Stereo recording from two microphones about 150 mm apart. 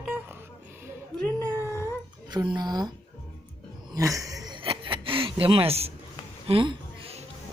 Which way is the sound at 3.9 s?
20° right (ahead or behind).